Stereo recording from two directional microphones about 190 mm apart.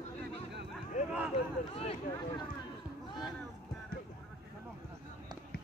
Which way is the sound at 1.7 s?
30° left (ahead or behind).